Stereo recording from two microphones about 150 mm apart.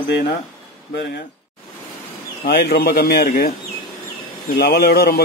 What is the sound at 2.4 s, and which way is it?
A man's voice, 90° left.